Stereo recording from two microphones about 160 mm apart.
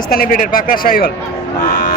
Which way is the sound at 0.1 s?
60° left (ahead or behind).